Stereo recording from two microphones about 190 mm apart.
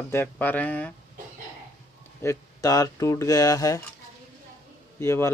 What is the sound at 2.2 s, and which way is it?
Speech, 15° left (ahead or behind).